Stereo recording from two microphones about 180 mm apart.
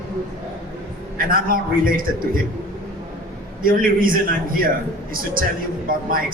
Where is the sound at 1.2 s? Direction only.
50° right (ahead or behind).